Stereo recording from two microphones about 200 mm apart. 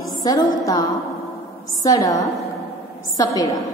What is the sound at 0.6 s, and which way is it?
Music, 15° left (ahead or behind).